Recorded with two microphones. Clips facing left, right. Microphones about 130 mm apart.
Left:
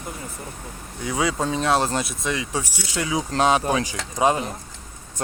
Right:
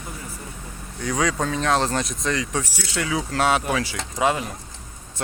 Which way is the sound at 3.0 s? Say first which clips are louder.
Left 1 dB; 25° left (ahead or behind).